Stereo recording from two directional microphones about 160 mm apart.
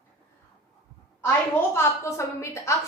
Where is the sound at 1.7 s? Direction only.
15° left (ahead or behind).